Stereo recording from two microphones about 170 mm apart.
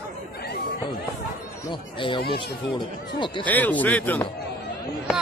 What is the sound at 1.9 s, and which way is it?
Speech, 30° left (ahead or behind).